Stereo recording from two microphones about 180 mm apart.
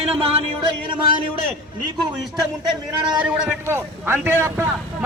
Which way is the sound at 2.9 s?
25° right (ahead or behind).